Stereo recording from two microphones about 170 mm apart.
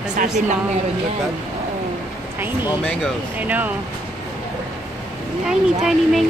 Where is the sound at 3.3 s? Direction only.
10° right (ahead or behind).